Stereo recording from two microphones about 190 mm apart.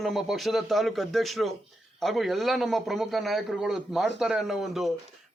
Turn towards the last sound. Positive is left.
turn(degrees=0)  # may be behind; listen again after turning